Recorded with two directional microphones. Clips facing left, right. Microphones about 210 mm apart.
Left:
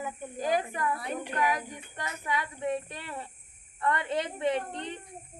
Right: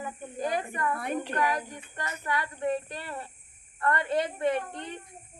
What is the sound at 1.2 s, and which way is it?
Speech, 10° left (ahead or behind).